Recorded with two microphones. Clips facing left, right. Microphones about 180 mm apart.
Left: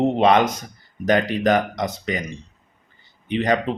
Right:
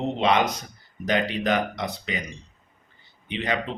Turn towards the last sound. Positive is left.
turn(degrees=45)  # may be behind; listen again after turning